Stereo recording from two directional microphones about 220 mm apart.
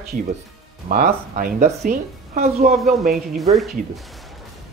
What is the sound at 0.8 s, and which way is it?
Speech, 40° right (ahead or behind).